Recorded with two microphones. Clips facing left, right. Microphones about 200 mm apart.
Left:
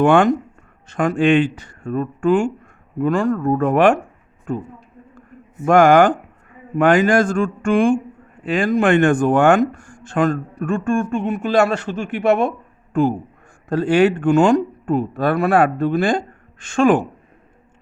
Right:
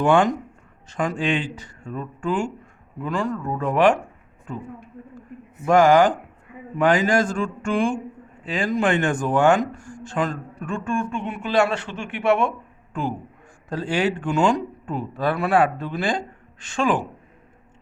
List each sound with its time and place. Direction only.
0.0 s speech: 60° left (ahead or behind)
5.6 s speech: 55° left (ahead or behind)